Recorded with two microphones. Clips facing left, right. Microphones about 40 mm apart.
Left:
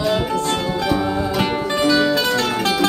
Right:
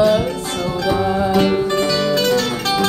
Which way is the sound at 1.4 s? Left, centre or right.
Centre.